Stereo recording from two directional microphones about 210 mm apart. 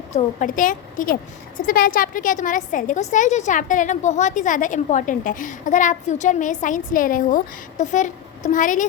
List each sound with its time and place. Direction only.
0.1 s a woman's voice: 40° left (ahead or behind)